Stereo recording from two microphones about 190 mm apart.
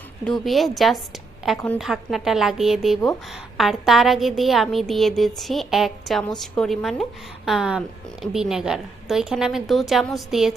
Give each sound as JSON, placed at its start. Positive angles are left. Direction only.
{"t": 0.4, "sound": "a woman's voice", "side_deg": 0}